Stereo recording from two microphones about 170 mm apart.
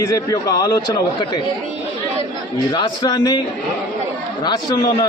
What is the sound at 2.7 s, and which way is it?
Speech, 25° left (ahead or behind).